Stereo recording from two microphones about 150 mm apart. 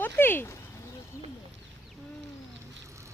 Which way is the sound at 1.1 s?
20° left (ahead or behind).